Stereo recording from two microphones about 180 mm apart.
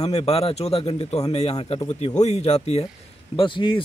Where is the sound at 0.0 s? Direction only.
35° left (ahead or behind).